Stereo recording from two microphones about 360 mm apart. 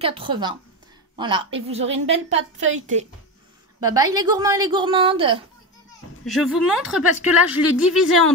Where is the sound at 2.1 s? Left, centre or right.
Right.